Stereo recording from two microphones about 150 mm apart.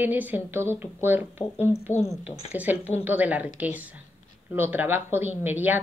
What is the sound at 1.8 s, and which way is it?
Speech, 45° left (ahead or behind).